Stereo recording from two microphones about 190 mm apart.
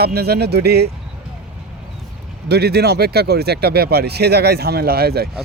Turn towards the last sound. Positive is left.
turn(degrees=-55)  # may be behind; listen again after turning